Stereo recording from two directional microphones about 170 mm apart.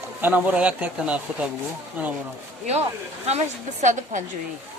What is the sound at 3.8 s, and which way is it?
Speech, 45° right (ahead or behind).